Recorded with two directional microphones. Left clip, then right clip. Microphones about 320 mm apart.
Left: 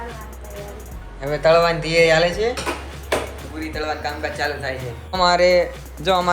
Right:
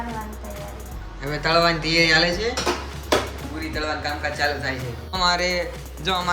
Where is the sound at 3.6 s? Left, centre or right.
Centre.